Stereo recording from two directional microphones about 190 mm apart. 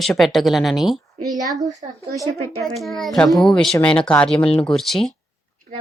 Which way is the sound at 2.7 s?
Centre (ahead or behind).